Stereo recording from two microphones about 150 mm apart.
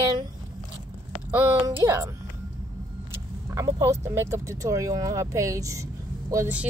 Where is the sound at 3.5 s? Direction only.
20° right (ahead or behind).